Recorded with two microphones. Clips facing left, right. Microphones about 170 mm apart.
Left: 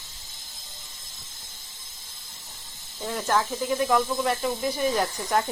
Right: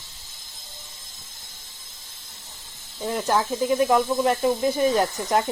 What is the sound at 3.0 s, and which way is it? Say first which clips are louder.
Speech: right 2 dB; 15° right (ahead or behind).